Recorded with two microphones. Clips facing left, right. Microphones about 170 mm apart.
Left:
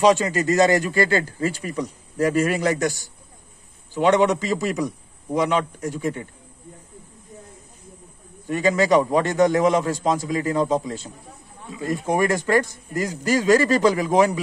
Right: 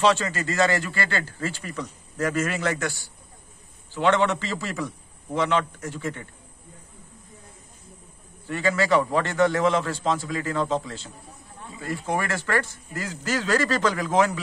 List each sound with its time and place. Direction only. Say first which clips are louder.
0.0 s a man's voice: left 5 dB; 15° left (ahead or behind)
8.5 s a man's voice: left 4 dB; 15° left (ahead or behind)